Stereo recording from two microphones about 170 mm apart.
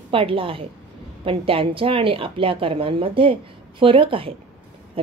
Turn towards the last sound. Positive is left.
turn(degrees=-30)  # may be behind; listen again after turning